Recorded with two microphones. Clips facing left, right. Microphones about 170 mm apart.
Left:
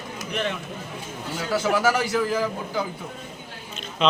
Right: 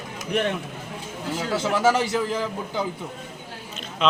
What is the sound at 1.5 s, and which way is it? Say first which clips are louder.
A man's voice: even; 25° right (ahead or behind).